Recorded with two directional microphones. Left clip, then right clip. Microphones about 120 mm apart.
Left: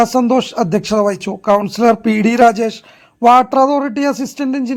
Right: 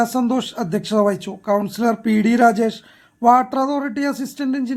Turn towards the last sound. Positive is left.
turn(degrees=30)  # may be behind; listen again after turning